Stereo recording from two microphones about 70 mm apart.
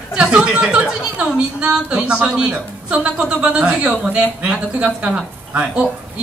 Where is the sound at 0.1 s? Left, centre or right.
Centre.